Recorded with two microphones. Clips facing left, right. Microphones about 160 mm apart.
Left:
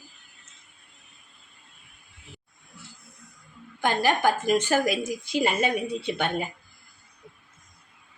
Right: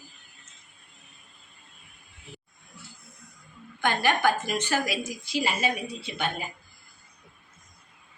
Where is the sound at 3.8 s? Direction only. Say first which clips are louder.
Left 1 dB; 35° left (ahead or behind); by 6.3 s 60° left (ahead or behind).